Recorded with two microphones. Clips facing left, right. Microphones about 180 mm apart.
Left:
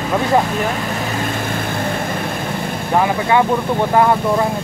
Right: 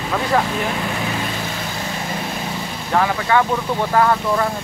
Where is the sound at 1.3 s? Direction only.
55° left (ahead or behind).